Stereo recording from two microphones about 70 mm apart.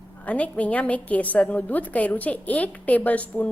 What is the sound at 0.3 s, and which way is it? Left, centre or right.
A woman's voice, left.